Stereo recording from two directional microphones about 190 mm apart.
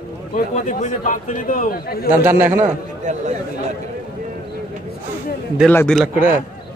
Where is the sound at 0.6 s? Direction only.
45° left (ahead or behind).